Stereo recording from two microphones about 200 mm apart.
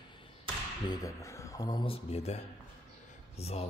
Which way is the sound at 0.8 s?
15° left (ahead or behind).